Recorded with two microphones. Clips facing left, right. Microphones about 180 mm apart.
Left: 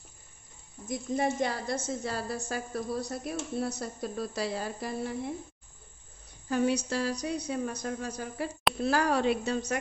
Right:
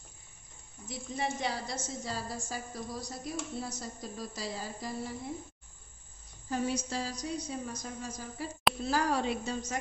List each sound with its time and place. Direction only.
0.8 s a woman's voice: 50° left (ahead or behind)
6.5 s a woman's voice: 70° left (ahead or behind)